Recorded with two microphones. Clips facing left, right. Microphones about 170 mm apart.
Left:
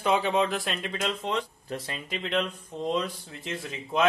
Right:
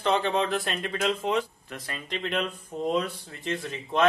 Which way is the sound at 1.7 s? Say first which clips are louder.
Left 4 dB; 30° left (ahead or behind).